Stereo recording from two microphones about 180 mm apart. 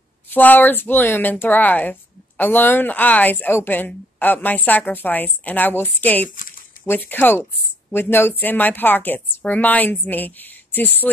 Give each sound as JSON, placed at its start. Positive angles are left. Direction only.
{"t": 0.3, "sound": "speech", "side_deg": 10}
{"t": 6.3, "sound": "a sound", "side_deg": 50}
{"t": 6.9, "sound": "speech", "side_deg": 10}